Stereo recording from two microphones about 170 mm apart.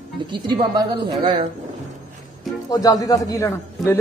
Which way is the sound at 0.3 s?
25° right (ahead or behind).